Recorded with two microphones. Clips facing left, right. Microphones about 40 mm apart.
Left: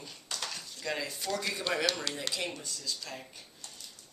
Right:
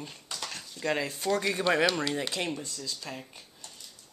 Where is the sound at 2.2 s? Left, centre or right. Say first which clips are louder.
Right 4 dB; right.